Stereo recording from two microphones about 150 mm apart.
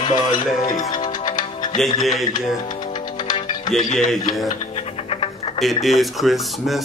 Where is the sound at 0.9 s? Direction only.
30° left (ahead or behind).